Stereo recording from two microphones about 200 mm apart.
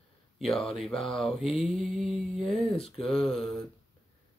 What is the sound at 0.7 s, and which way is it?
Mantra, centre (ahead or behind).